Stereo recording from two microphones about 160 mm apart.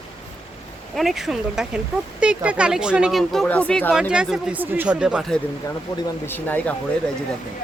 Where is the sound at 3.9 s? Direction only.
5° right (ahead or behind).